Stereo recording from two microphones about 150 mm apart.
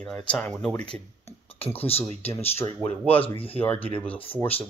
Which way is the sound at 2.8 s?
10° left (ahead or behind).